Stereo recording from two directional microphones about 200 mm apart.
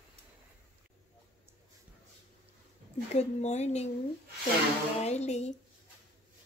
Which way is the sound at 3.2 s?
35° left (ahead or behind).